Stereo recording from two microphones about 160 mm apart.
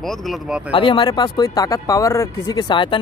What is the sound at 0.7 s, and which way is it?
Speech, 30° left (ahead or behind).